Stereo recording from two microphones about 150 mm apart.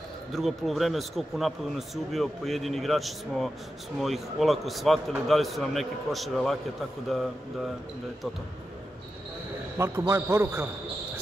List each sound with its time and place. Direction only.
0.3 s speech: centre (ahead or behind)
9.8 s a man's voice: 20° right (ahead or behind)